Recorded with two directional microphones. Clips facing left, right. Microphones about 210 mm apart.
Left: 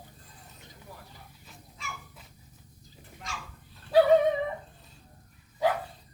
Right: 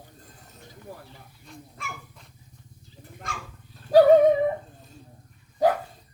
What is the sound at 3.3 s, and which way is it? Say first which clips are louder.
Dog: right 4 dB; 55° right (ahead or behind).